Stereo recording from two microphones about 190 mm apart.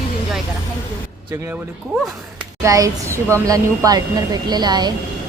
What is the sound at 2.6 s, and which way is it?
Speech, 15° right (ahead or behind).